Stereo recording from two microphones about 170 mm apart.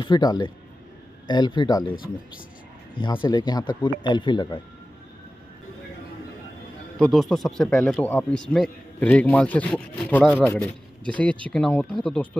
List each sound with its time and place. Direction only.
0.0 s speech: 25° left (ahead or behind)
3.0 s speech: 30° left (ahead or behind)
7.0 s a man's voice: centre (ahead or behind)